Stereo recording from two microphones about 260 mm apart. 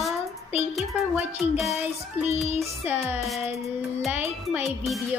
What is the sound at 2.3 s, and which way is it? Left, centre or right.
Music, left.